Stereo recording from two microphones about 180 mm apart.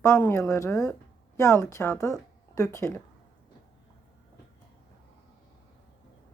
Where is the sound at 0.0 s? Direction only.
20° left (ahead or behind).